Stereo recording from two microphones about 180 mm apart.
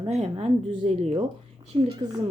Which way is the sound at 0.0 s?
35° right (ahead or behind).